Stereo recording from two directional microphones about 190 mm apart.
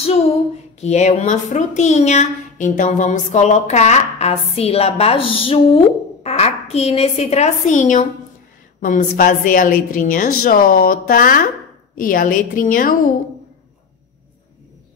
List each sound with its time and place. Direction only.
0.7 s a woman's voice: 35° left (ahead or behind)